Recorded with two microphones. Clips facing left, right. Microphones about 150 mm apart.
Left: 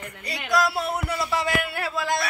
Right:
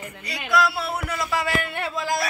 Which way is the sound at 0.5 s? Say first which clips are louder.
Right 1 dB; 40° left (ahead or behind).